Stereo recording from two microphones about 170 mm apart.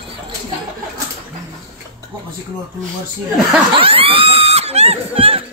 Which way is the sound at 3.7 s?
35° right (ahead or behind).